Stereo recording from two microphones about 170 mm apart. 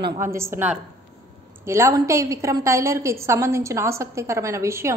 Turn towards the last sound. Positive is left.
turn(degrees=-15)  # may be behind; listen again after turning